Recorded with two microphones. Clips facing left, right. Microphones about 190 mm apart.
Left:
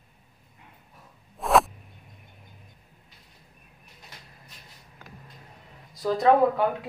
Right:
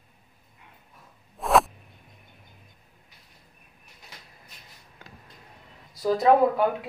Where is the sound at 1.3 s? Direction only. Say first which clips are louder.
Even; centre (ahead or behind).